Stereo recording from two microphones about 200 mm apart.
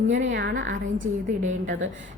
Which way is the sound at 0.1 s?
65° right (ahead or behind).